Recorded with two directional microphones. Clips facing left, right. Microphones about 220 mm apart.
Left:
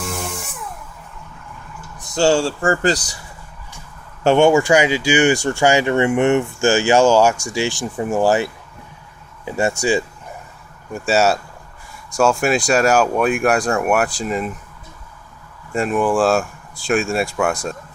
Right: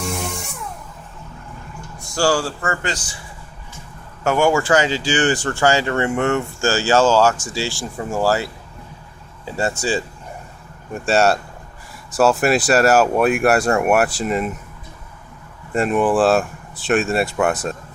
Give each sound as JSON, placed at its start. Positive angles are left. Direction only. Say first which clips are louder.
{"t": 0.1, "sound": "music", "louder": "right 1 dB", "side_deg": 0}
{"t": 2.0, "sound": "speech", "louder": "left 3 dB", "side_deg": 20}
{"t": 4.2, "sound": "speech", "louder": "left 4 dB", "side_deg": 25}
{"t": 9.5, "sound": "speech", "louder": "left 3 dB", "side_deg": 15}
{"t": 10.9, "sound": "speech", "louder": "even", "side_deg": 0}
{"t": 15.7, "sound": "speech", "louder": "right 1 dB", "side_deg": 0}